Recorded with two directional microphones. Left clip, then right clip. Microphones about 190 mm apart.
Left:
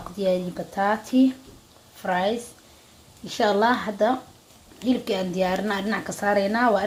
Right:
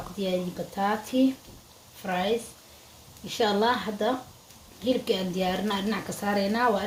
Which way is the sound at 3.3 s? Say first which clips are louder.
Left 4 dB; 25° left (ahead or behind).